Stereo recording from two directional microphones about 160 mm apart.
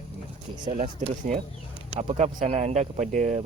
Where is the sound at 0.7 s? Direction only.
45° right (ahead or behind).